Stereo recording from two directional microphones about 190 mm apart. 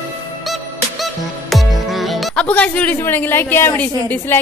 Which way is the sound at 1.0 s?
Centre (ahead or behind).